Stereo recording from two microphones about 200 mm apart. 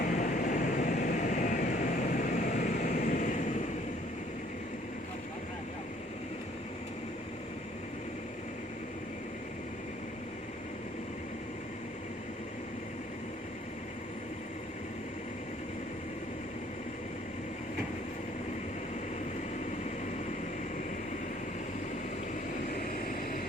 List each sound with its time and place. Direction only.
0.0 s vehicle: 40° left (ahead or behind)
22.7 s vehicle: 45° left (ahead or behind)